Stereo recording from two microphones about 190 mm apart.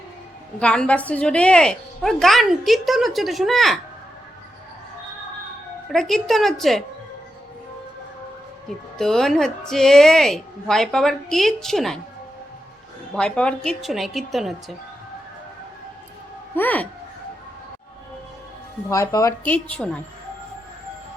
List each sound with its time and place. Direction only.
0.6 s a woman's voice: 5° left (ahead or behind)
5.9 s a woman's voice: centre (ahead or behind)
9.0 s a woman's voice: centre (ahead or behind)
13.1 s a woman's voice: 5° left (ahead or behind)
16.6 s speech: 10° left (ahead or behind)
18.9 s speech: 15° left (ahead or behind)